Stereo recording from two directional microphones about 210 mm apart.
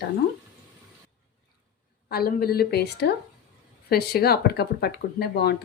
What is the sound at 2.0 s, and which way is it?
Speech, 45° left (ahead or behind).